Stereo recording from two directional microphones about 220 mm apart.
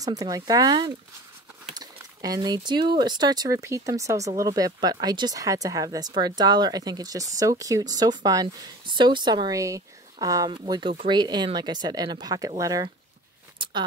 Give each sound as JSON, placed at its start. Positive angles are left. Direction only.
{"t": 0.0, "sound": "speech", "side_deg": -15}